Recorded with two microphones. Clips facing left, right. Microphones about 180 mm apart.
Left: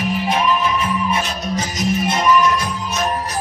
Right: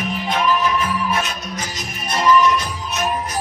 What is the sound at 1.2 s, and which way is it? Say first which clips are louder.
Music: left 4 dB; 25° left (ahead or behind).